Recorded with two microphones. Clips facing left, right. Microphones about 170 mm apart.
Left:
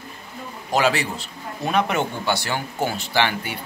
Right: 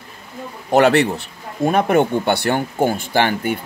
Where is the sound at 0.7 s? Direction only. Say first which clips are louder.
Right 8 dB; 60° right (ahead or behind).